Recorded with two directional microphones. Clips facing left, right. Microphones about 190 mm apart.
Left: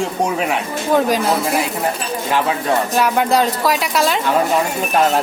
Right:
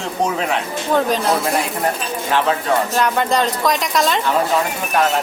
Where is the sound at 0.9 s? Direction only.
10° left (ahead or behind).